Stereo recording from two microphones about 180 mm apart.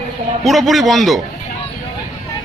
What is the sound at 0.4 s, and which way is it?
Speech, centre (ahead or behind).